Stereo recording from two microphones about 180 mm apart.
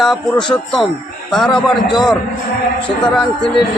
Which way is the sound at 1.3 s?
Centre (ahead or behind).